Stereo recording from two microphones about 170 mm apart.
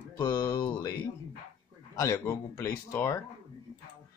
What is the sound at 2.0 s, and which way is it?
Speech, 15° left (ahead or behind).